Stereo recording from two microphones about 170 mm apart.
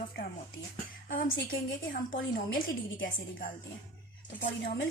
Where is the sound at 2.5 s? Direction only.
60° left (ahead or behind).